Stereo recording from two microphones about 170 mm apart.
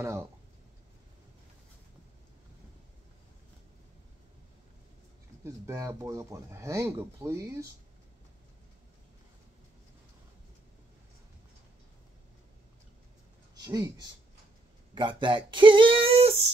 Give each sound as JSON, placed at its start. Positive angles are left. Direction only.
{"t": 5.4, "sound": "speech", "side_deg": -15}
{"t": 13.7, "sound": "speech", "side_deg": -25}